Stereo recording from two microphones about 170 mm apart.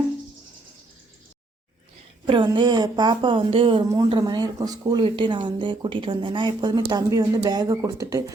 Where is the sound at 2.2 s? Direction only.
25° right (ahead or behind).